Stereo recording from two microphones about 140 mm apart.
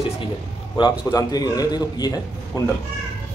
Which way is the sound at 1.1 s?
25° left (ahead or behind).